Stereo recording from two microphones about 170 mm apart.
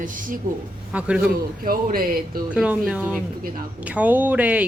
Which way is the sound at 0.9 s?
5° right (ahead or behind).